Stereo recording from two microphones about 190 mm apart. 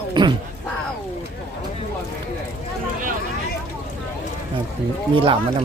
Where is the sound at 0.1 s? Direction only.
25° right (ahead or behind).